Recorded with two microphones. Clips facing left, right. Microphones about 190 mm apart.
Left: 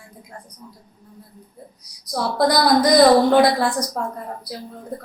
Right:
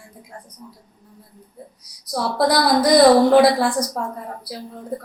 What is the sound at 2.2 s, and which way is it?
A woman's voice, 5° right (ahead or behind).